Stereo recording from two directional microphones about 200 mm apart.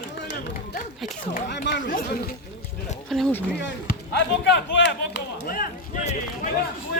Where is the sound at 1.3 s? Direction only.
50° left (ahead or behind).